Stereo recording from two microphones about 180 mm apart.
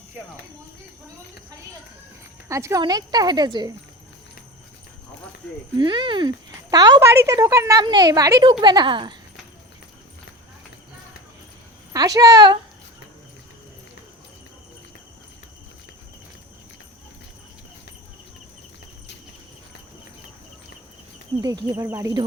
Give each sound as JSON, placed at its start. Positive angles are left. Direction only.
{"t": 2.5, "sound": "speech", "side_deg": -15}
{"t": 5.7, "sound": "speech", "side_deg": -25}
{"t": 11.9, "sound": "speech", "side_deg": -20}
{"t": 21.4, "sound": "speech", "side_deg": -20}